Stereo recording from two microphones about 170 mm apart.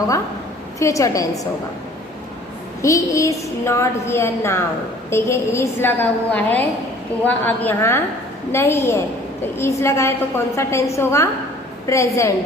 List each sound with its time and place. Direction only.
0.8 s a woman's voice: 20° left (ahead or behind)
2.8 s a woman's voice: 20° left (ahead or behind)